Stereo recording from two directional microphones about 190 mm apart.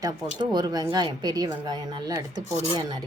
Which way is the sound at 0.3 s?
20° right (ahead or behind).